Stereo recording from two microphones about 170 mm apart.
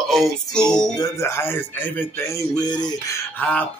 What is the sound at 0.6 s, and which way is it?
Speech, 20° left (ahead or behind).